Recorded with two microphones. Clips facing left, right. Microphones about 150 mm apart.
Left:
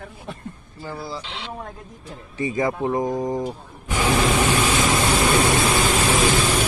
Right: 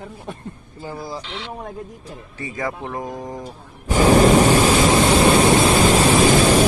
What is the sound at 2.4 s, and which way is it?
Speech, 20° left (ahead or behind).